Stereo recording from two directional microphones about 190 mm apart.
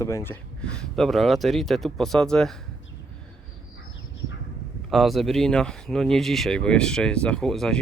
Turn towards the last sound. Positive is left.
turn(degrees=0)  # may be behind; listen again after turning